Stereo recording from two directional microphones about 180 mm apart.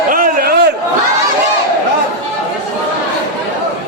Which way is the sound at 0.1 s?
50° right (ahead or behind).